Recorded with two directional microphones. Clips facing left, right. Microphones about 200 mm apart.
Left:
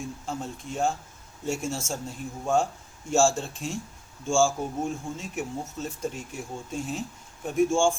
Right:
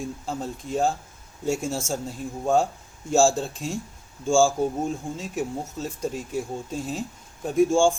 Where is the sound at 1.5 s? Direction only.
35° right (ahead or behind).